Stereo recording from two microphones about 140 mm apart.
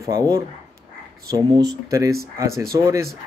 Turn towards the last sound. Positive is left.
turn(degrees=-20)  # may be behind; listen again after turning